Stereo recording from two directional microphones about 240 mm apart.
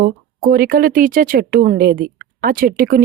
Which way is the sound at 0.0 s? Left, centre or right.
Right.